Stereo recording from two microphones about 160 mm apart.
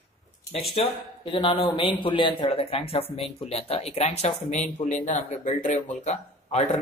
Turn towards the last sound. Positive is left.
turn(degrees=45)  # may be behind; listen again after turning